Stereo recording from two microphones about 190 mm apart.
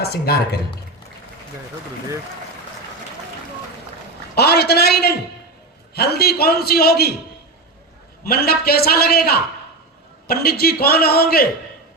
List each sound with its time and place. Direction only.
0.0 s a man's voice: 55° left (ahead or behind)
4.4 s a man's voice: 60° left (ahead or behind)
8.2 s a man's voice: 55° left (ahead or behind)